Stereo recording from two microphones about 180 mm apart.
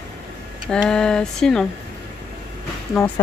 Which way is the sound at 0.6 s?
5° left (ahead or behind).